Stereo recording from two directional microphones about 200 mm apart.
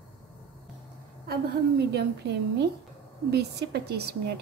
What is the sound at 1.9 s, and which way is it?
A woman's voice, 55° right (ahead or behind).